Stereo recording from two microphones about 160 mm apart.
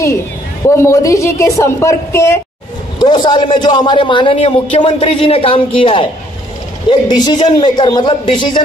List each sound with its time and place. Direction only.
0.7 s a woman's voice: 20° left (ahead or behind)
3.0 s a man's voice: 30° left (ahead or behind)